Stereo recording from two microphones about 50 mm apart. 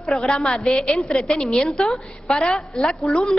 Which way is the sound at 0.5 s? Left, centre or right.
Centre.